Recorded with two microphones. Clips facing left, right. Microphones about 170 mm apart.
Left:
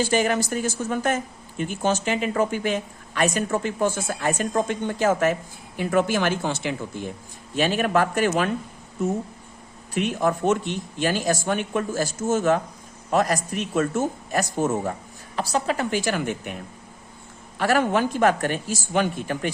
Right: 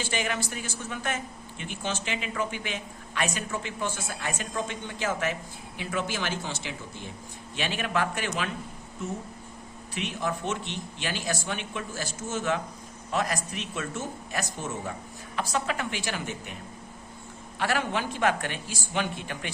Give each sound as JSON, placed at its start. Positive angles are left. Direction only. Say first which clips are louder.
{"t": 0.0, "sound": "speech", "louder": "left 9 dB", "side_deg": 40}
{"t": 7.5, "sound": "speech", "louder": "left 8 dB", "side_deg": 45}
{"t": 9.9, "sound": "speech", "louder": "left 8 dB", "side_deg": 50}
{"t": 15.4, "sound": "speech", "louder": "left 5 dB", "side_deg": 35}
{"t": 17.6, "sound": "speech", "louder": "left 8 dB", "side_deg": 45}